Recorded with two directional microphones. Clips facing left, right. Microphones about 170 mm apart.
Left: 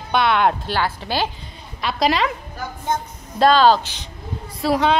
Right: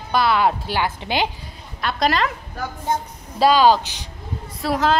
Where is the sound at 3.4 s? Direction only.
10° right (ahead or behind).